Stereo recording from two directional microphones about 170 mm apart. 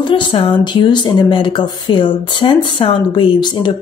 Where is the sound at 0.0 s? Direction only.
30° left (ahead or behind).